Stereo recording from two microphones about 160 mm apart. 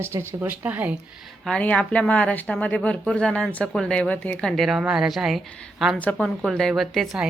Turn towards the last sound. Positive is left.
turn(degrees=0)  # may be behind; listen again after turning